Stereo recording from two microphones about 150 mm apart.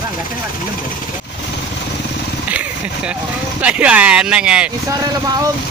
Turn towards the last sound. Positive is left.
turn(degrees=-5)  # may be behind; listen again after turning